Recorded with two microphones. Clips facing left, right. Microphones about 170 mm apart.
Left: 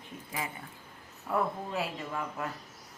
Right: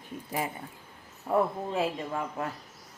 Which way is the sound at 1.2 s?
25° right (ahead or behind).